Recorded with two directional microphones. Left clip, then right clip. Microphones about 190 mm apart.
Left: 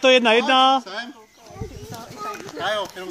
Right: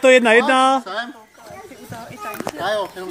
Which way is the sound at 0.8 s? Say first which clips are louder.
Right 5 dB; 20° left (ahead or behind).